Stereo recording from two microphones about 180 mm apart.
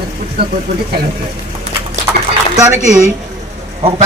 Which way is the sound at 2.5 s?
20° right (ahead or behind).